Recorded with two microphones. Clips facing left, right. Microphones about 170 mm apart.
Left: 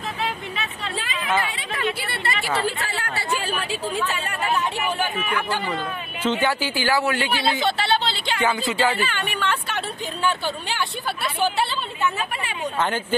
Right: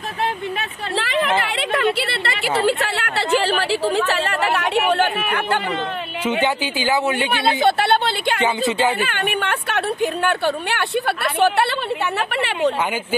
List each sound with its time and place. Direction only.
0.2 s a woman's voice: 70° right (ahead or behind)
6.2 s a man's voice: 15° right (ahead or behind)
7.6 s speech: 55° right (ahead or behind)
8.4 s a man's voice: 20° right (ahead or behind)
9.0 s speech: 55° right (ahead or behind); by 12.7 s 75° right (ahead or behind)